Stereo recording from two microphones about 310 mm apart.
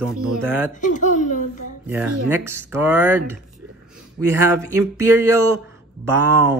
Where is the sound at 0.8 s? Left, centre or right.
Left.